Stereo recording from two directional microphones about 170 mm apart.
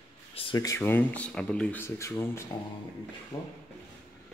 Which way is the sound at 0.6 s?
15° left (ahead or behind).